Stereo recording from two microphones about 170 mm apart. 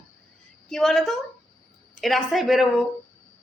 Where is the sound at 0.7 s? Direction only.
Centre (ahead or behind).